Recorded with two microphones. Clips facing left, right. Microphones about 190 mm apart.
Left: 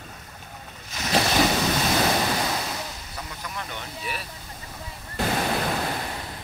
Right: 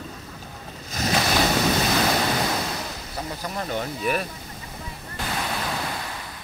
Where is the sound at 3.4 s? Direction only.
40° right (ahead or behind).